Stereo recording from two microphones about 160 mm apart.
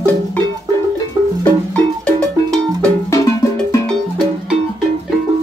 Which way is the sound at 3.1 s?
20° left (ahead or behind).